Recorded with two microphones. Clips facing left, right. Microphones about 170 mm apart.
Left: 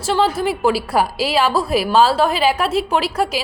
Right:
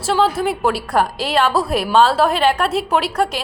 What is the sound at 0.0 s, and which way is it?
A woman's voice, centre (ahead or behind).